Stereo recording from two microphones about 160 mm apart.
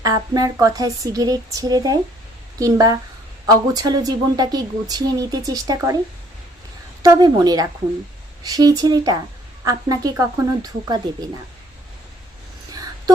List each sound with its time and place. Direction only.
0.0 s a woman's voice: 20° right (ahead or behind)
7.0 s a woman's voice: 25° right (ahead or behind)
12.7 s a sound: 25° right (ahead or behind)